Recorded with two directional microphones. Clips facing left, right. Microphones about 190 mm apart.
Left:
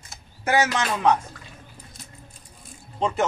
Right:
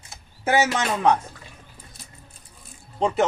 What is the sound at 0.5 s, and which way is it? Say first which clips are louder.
Speech: right 1 dB; 25° right (ahead or behind).